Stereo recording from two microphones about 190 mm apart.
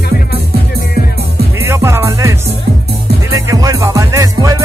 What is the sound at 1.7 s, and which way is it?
Music, 15° right (ahead or behind).